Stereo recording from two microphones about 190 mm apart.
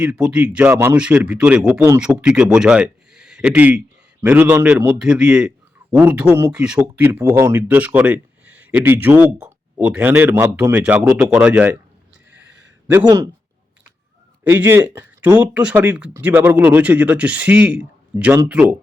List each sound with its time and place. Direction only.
0.0 s a man's voice: 5° right (ahead or behind)
13.1 s a man's voice: 15° right (ahead or behind)
14.4 s a man's voice: 10° right (ahead or behind)